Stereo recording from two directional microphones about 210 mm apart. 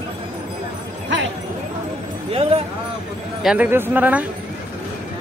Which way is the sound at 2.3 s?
25° right (ahead or behind).